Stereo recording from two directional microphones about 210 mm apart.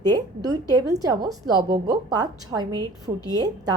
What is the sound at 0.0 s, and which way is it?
A woman's voice, 20° right (ahead or behind).